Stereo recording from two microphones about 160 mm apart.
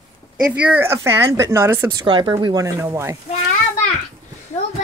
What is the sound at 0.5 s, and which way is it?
Speech, 10° right (ahead or behind).